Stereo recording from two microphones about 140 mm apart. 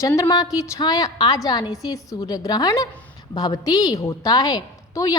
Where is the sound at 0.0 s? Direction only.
20° left (ahead or behind).